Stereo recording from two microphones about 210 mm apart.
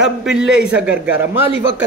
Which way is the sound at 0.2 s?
Centre (ahead or behind).